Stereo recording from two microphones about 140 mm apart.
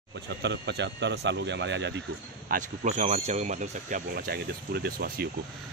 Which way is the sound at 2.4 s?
75° right (ahead or behind).